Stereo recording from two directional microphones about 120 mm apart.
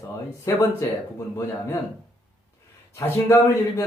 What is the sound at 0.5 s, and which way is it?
Speech, 25° left (ahead or behind).